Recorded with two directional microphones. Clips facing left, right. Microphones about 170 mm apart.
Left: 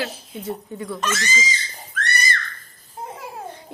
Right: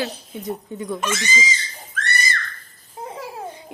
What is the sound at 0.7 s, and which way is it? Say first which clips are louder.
Speech: right 1 dB; 15° right (ahead or behind).